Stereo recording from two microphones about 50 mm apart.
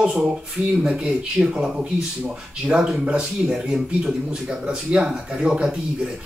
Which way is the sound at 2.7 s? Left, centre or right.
Centre.